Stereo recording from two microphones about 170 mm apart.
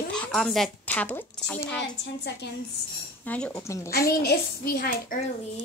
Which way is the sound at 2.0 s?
90° left.